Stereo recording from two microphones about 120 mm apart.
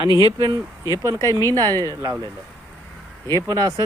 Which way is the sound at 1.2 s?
25° left (ahead or behind).